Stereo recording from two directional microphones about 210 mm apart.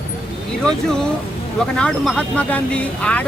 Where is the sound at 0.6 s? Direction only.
5° left (ahead or behind).